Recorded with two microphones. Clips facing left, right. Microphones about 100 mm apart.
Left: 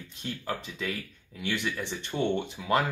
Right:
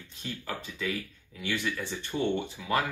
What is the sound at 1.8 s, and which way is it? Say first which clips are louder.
Speech: left 1 dB; 20° left (ahead or behind).